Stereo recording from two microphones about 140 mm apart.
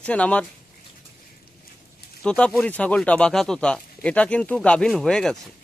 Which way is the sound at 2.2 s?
5° left (ahead or behind).